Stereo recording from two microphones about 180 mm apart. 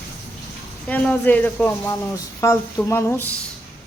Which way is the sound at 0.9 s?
10° left (ahead or behind).